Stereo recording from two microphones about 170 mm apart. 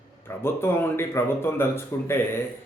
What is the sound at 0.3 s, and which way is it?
Speech, 15° left (ahead or behind).